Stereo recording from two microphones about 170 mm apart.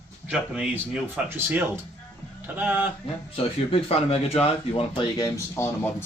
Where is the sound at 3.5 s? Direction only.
35° left (ahead or behind); by 5.9 s 15° left (ahead or behind).